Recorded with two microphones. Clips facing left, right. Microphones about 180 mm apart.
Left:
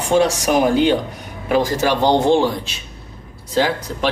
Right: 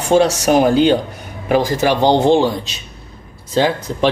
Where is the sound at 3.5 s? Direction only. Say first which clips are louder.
Right 2 dB; 20° right (ahead or behind).